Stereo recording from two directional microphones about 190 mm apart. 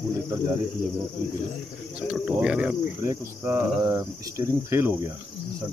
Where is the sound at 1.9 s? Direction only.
5° right (ahead or behind).